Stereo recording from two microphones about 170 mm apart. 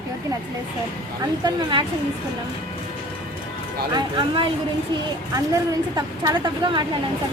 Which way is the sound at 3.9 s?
30° right (ahead or behind).